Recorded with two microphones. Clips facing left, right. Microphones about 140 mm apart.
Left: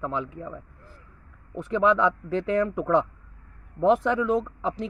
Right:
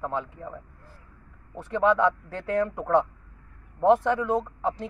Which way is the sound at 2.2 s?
90° left.